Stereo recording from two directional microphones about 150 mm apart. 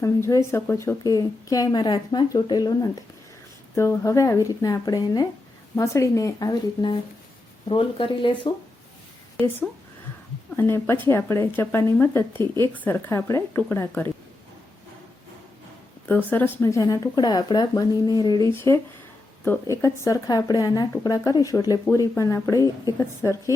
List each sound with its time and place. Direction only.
0.0 s a woman's voice: 20° left (ahead or behind)
10.6 s speech: 15° left (ahead or behind)
16.0 s a woman's voice: 10° left (ahead or behind)
19.8 s a woman's voice: 25° left (ahead or behind)